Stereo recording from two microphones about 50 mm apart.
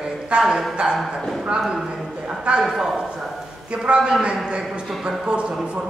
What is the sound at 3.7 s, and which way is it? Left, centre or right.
A woman's voice, centre.